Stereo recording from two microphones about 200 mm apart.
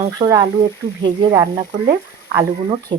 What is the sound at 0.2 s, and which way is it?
Speech, 20° right (ahead or behind).